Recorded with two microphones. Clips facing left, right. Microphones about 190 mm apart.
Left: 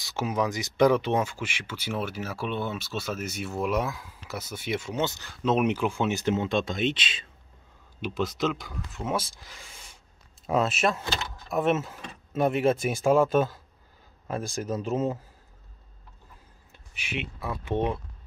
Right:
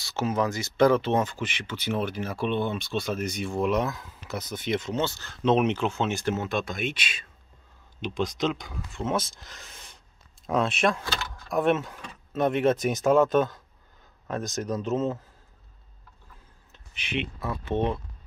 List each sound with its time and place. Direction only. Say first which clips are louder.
0.0 s speech: right 1 dB; 15° left (ahead or behind)
8.0 s speech: even; 5° left (ahead or behind)
16.9 s speech: right 3 dB; 5° left (ahead or behind)